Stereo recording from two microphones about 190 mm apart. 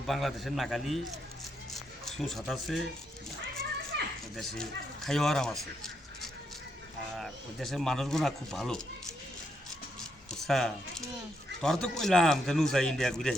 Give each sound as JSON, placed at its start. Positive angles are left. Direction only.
{"t": 0.1, "sound": "speech", "side_deg": 0}
{"t": 4.4, "sound": "speech", "side_deg": 0}
{"t": 10.4, "sound": "speech", "side_deg": 0}